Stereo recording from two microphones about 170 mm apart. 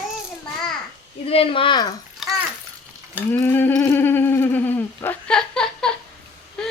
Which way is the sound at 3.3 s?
10° left (ahead or behind).